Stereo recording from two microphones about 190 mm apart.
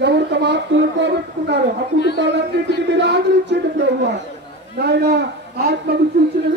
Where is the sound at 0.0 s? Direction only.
65° right (ahead or behind).